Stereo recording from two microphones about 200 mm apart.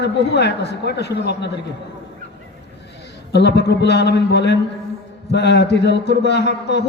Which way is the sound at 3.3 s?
55° left (ahead or behind).